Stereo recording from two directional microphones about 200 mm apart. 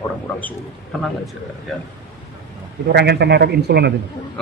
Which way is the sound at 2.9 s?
55° right (ahead or behind).